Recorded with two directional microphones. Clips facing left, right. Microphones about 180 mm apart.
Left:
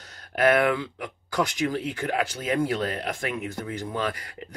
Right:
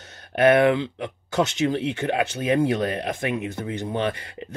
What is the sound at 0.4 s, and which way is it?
Speech, 25° right (ahead or behind).